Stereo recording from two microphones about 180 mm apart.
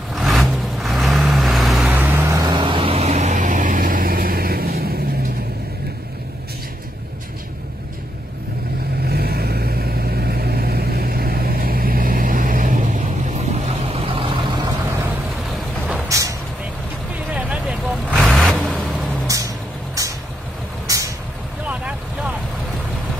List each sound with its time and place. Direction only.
0.1 s vehicle: centre (ahead or behind)
2.0 s vehicle: 15° right (ahead or behind); by 4.9 s 60° right (ahead or behind)
9.0 s vehicle: 60° right (ahead or behind)
13.9 s vehicle: 30° right (ahead or behind)
15.9 s vehicle: 15° right (ahead or behind)
17.3 s vehicle: 5° right (ahead or behind)
20.0 s vehicle: 20° right (ahead or behind)